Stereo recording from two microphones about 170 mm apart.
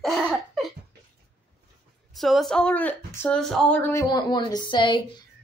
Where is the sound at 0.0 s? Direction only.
Centre (ahead or behind).